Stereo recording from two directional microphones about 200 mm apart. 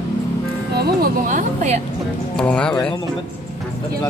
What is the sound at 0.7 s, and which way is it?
Music, 50° right (ahead or behind).